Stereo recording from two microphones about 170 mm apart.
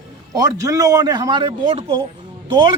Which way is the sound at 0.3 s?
20° right (ahead or behind).